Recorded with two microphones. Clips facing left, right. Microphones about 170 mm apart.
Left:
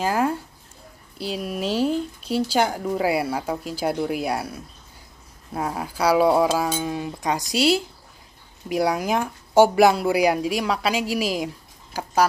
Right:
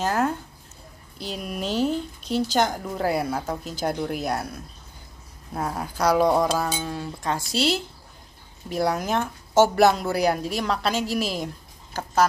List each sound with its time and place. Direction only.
0.0 s speech: 5° left (ahead or behind)